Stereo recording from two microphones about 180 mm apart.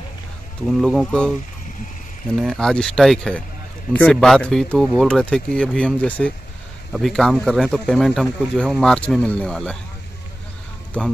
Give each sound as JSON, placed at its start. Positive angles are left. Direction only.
{"t": 0.7, "sound": "speech", "side_deg": 0}
{"t": 2.3, "sound": "speech", "side_deg": 0}
{"t": 10.9, "sound": "speech", "side_deg": 5}